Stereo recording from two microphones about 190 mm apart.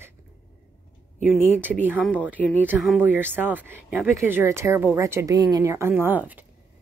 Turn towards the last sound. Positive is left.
turn(degrees=-10)  # may be behind; listen again after turning